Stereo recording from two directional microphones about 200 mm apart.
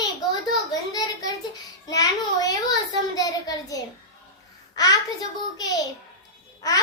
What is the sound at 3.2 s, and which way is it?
Child singing, 20° left (ahead or behind).